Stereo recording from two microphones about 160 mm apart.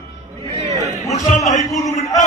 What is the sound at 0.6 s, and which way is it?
Chatter, 45° right (ahead or behind).